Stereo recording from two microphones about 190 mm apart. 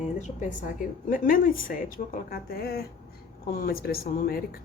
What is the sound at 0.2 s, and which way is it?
Speech, 45° left (ahead or behind).